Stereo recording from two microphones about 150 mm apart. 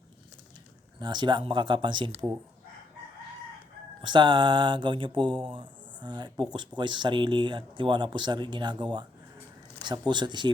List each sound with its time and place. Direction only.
0.9 s speech: 30° right (ahead or behind)
4.0 s speech: 30° right (ahead or behind)